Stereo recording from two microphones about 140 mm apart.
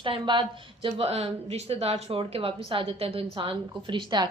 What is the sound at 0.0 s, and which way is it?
A woman's voice, 35° right (ahead or behind).